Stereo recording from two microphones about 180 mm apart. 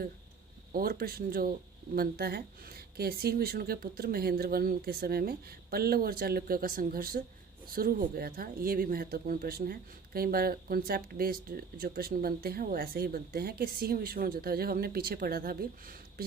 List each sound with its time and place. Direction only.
0.7 s speech: 55° right (ahead or behind)